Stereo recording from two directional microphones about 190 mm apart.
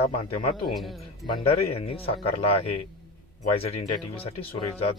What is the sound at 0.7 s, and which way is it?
Speech, centre (ahead or behind).